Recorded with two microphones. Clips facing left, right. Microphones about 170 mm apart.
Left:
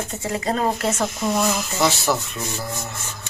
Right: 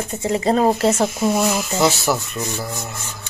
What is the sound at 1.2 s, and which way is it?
Speech, 5° right (ahead or behind).